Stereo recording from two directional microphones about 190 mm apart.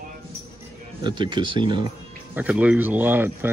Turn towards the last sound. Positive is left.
turn(degrees=-10)  # may be behind; listen again after turning